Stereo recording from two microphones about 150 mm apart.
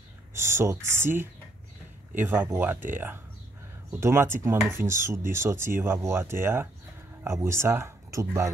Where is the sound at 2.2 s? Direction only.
15° right (ahead or behind).